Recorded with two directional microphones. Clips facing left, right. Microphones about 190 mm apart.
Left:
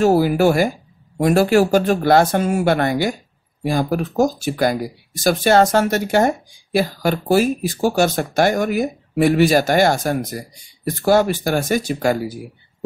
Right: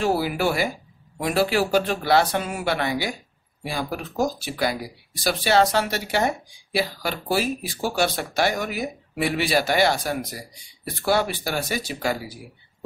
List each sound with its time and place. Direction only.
0.0 s speech: 45° left (ahead or behind)